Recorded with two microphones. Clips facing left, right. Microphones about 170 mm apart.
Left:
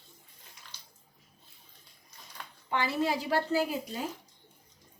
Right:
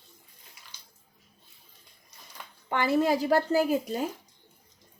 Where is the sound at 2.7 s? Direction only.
50° right (ahead or behind).